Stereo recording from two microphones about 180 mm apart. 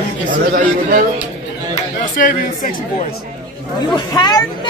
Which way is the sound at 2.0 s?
45° left (ahead or behind).